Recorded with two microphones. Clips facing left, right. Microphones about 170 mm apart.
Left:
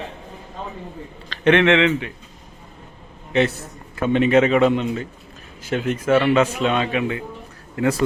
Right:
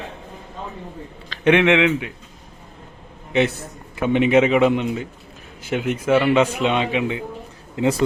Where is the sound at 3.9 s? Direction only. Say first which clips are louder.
Even; 15° right (ahead or behind).